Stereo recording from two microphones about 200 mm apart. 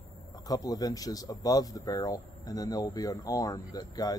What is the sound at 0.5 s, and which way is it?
Speech, 20° left (ahead or behind).